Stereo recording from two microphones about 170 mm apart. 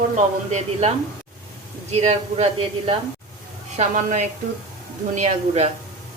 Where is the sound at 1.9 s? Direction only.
40° right (ahead or behind).